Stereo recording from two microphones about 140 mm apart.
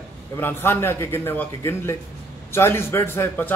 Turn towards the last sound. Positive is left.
turn(degrees=15)  # may be behind; listen again after turning